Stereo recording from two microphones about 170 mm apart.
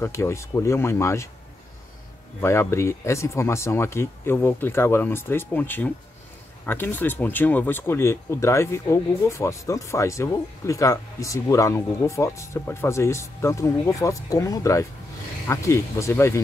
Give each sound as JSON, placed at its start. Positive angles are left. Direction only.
{"t": 0.0, "sound": "speech", "side_deg": 15}
{"t": 2.4, "sound": "speech", "side_deg": 15}